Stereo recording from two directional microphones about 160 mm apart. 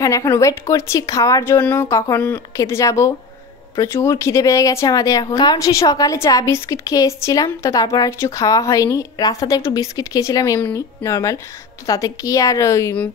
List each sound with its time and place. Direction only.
0.0 s speech: 25° left (ahead or behind)